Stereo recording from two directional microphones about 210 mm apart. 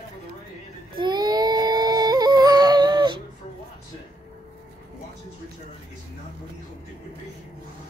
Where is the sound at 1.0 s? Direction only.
20° right (ahead or behind).